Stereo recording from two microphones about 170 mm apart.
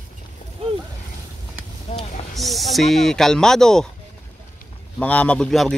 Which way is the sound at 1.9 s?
40° left (ahead or behind).